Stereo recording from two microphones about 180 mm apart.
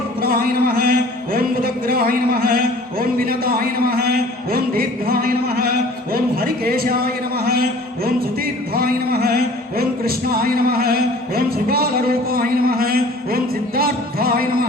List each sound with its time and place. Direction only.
0.2 s speech: 55° right (ahead or behind)